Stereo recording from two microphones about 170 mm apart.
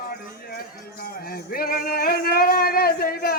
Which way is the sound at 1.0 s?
60° left (ahead or behind).